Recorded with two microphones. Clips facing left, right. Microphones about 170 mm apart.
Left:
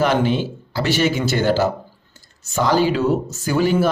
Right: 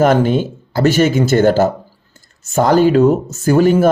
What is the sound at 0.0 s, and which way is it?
Speech, 45° right (ahead or behind).